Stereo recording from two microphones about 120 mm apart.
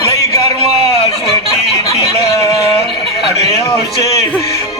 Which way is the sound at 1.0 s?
55° left (ahead or behind).